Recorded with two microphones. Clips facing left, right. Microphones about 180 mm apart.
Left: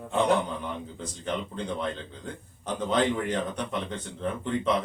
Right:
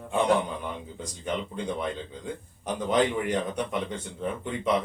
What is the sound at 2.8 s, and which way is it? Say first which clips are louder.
A man's voice: right 1 dB; 10° right (ahead or behind).